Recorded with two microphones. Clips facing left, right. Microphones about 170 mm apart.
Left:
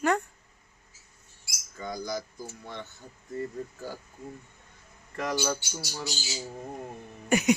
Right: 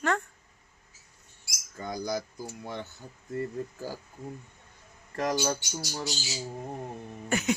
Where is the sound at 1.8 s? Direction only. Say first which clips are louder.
Right 2 dB; 55° right (ahead or behind).